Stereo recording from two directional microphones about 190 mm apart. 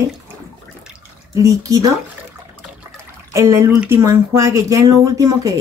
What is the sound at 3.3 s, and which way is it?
Speech, 15° right (ahead or behind).